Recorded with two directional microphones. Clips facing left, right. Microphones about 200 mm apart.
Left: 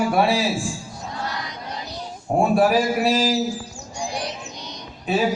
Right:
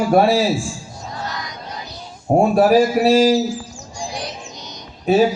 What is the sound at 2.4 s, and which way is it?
Speech, 40° right (ahead or behind).